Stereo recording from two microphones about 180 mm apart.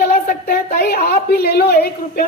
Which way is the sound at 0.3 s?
55° left (ahead or behind).